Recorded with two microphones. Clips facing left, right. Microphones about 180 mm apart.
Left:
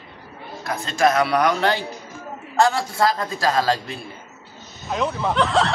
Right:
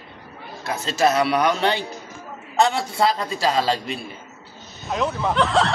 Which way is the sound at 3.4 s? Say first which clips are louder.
Left 1 dB; 25° right (ahead or behind).